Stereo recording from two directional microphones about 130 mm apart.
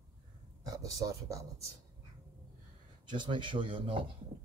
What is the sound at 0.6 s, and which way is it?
Speech, 25° right (ahead or behind).